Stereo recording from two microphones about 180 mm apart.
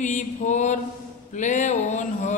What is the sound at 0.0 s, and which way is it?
Speech, 40° left (ahead or behind).